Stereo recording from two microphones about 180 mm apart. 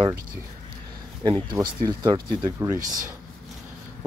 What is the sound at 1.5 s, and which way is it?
Speech, 20° right (ahead or behind).